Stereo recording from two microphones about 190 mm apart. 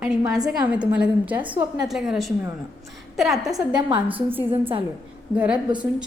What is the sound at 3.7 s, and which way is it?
Speech, 25° right (ahead or behind).